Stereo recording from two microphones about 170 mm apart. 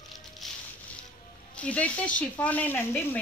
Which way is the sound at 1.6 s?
10° left (ahead or behind).